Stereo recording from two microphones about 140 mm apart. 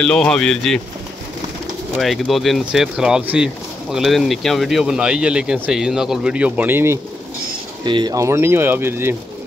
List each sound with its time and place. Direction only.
0.0 s speech: 5° left (ahead or behind)
2.0 s speech: centre (ahead or behind); by 7.0 s 15° right (ahead or behind)
7.8 s speech: 30° right (ahead or behind); by 9.1 s 15° right (ahead or behind)